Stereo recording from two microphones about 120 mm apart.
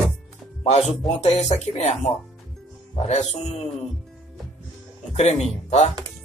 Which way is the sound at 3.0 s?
70° left (ahead or behind).